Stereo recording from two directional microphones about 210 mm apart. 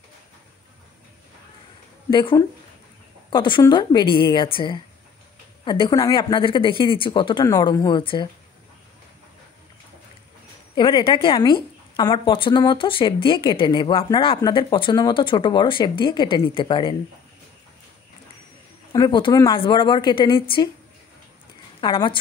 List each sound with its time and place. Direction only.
2.0 s a woman's voice: 20° left (ahead or behind)
10.7 s a woman's voice: 20° left (ahead or behind)
18.9 s a woman's voice: 20° left (ahead or behind)
21.8 s a woman's voice: 20° left (ahead or behind)